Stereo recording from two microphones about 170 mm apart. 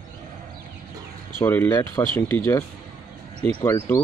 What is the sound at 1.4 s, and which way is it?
Speech, 15° left (ahead or behind).